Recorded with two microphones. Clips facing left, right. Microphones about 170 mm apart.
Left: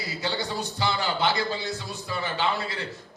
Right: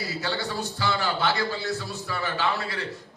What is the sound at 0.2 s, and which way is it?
A man's voice, 20° left (ahead or behind).